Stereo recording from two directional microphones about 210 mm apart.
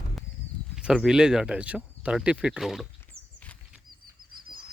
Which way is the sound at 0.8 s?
5° right (ahead or behind).